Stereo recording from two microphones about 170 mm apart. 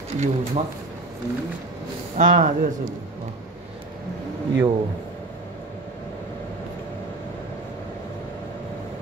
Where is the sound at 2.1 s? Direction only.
50° right (ahead or behind).